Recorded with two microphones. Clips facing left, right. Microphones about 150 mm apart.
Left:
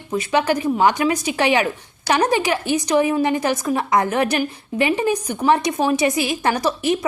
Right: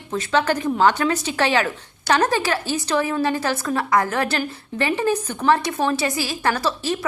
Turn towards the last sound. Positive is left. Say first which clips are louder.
# left 3 dB
turn(degrees=20)  # may be behind; listen again after turning